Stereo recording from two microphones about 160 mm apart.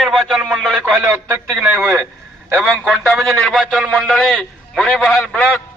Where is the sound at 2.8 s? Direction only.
Centre (ahead or behind).